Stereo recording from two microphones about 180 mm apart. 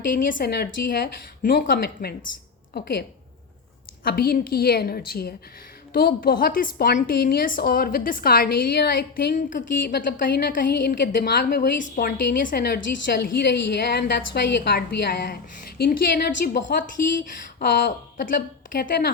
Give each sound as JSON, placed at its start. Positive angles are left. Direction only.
{"t": 0.3, "sound": "a woman's voice", "side_deg": 55}
{"t": 4.0, "sound": "a woman's voice", "side_deg": 60}
{"t": 17.6, "sound": "speech", "side_deg": 70}
{"t": 18.7, "sound": "a woman's voice", "side_deg": 55}